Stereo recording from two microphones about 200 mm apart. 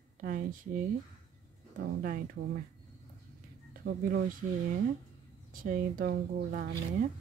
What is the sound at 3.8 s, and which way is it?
Speech, 65° right (ahead or behind).